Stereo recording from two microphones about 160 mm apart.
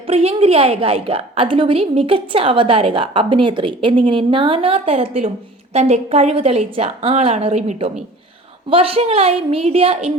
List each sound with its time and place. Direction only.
0.1 s a woman's voice: 40° right (ahead or behind)